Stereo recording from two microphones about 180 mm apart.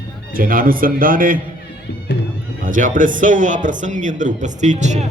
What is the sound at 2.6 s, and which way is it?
Speech, 50° right (ahead or behind).